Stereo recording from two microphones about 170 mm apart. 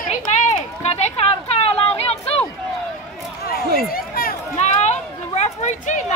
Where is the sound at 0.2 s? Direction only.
45° left (ahead or behind).